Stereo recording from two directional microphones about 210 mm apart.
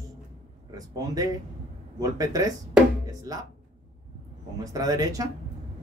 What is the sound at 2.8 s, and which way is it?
Music, 5° right (ahead or behind).